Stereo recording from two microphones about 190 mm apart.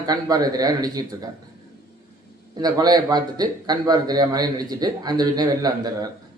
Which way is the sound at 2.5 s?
20° right (ahead or behind).